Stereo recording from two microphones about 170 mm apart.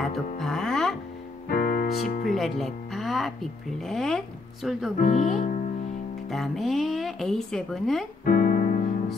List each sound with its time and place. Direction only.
0.0 s music: centre (ahead or behind)
1.5 s music: 55° left (ahead or behind)
2.2 s music: centre (ahead or behind)
3.9 s speech: centre (ahead or behind)
5.0 s speech: 45° left (ahead or behind)
6.3 s speech: centre (ahead or behind)
8.3 s music: 50° left (ahead or behind)